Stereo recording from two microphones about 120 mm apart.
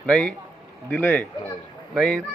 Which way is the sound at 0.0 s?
5° left (ahead or behind).